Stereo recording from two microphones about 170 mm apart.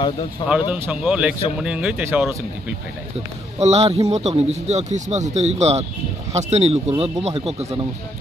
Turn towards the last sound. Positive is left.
turn(degrees=-35)  # may be behind; listen again after turning